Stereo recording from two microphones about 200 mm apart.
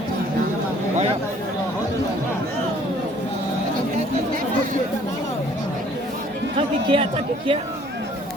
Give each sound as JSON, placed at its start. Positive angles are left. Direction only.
{"t": 6.8, "sound": "speech", "side_deg": -25}